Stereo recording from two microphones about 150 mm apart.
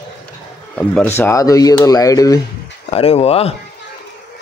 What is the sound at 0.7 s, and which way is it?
Speech, 10° left (ahead or behind).